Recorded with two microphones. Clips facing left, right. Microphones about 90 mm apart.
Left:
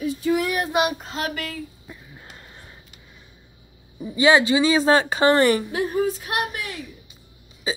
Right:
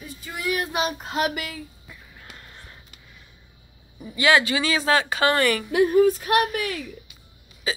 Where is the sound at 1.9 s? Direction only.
20° left (ahead or behind).